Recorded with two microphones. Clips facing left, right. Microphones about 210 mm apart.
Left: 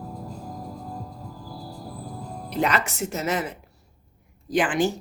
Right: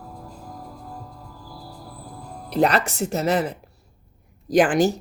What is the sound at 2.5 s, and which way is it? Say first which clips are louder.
A woman's voice: right 5 dB; 35° right (ahead or behind).